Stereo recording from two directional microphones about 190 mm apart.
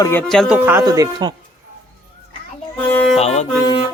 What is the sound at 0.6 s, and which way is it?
Speech, 10° right (ahead or behind).